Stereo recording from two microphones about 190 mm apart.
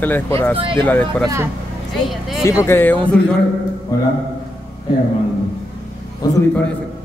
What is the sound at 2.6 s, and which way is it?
Speech, 10° left (ahead or behind).